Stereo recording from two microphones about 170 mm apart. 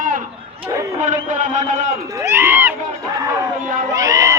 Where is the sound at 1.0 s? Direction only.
45° right (ahead or behind).